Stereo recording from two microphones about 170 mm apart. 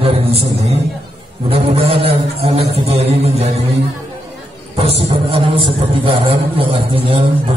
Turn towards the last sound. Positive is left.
turn(degrees=-30)  # may be behind; listen again after turning